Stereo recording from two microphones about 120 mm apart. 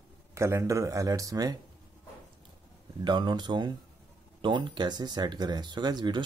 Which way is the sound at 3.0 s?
40° right (ahead or behind).